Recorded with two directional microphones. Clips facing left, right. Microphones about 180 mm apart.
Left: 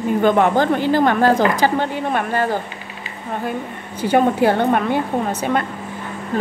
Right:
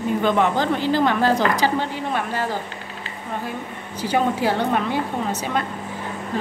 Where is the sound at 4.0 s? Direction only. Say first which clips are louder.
Left 5 dB; 55° left (ahead or behind).